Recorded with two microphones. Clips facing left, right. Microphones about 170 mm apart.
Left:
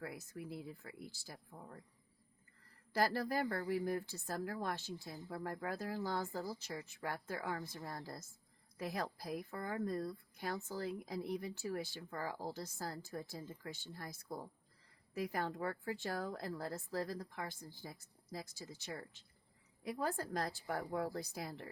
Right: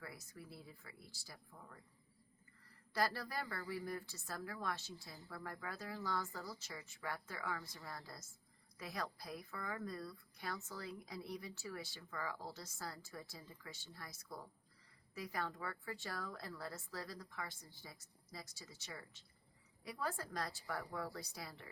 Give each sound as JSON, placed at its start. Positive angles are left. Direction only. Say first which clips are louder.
{"t": 0.0, "sound": "speech", "louder": "left 7 dB", "side_deg": 55}
{"t": 1.5, "sound": "speech", "louder": "left 5 dB", "side_deg": 35}
{"t": 3.0, "sound": "speech", "louder": "left 5 dB", "side_deg": 50}